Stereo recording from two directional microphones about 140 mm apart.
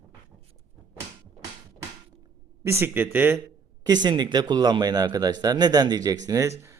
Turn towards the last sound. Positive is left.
turn(degrees=-25)  # may be behind; listen again after turning